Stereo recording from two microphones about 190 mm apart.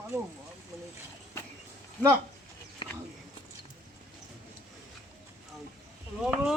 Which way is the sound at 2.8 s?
25° left (ahead or behind).